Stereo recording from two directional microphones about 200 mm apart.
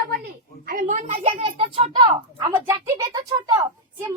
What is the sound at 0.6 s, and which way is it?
A child's voice, 40° right (ahead or behind).